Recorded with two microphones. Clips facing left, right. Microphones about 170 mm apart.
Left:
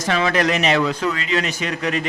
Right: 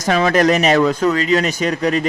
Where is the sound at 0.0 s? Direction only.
40° right (ahead or behind).